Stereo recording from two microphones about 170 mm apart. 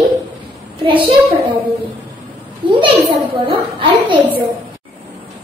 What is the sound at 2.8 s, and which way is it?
A child's voice, 30° right (ahead or behind).